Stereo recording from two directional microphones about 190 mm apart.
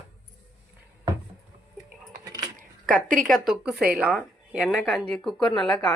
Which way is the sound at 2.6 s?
45° right (ahead or behind).